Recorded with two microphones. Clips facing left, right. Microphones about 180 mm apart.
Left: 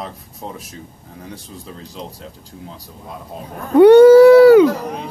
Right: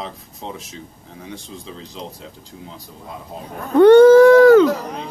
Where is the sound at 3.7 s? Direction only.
10° left (ahead or behind).